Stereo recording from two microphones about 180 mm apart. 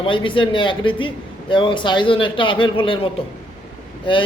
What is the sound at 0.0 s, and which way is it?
A man's voice, 30° left (ahead or behind).